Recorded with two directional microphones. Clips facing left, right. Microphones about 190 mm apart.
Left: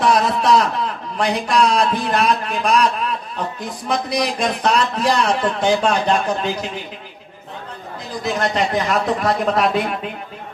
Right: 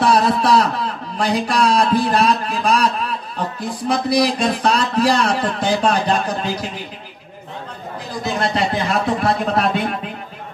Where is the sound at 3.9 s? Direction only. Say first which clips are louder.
Right 4 dB; 30° right (ahead or behind).